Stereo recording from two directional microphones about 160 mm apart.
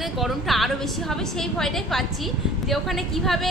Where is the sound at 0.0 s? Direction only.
Centre (ahead or behind).